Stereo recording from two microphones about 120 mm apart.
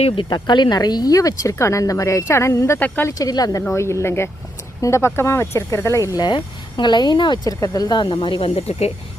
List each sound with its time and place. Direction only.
0.3 s speech: 35° left (ahead or behind); by 3.2 s 15° left (ahead or behind)
3.2 s speech: 30° left (ahead or behind)
6.1 s speech: 40° left (ahead or behind); by 8.9 s 55° left (ahead or behind)